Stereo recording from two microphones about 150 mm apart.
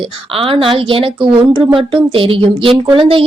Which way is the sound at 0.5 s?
35° right (ahead or behind).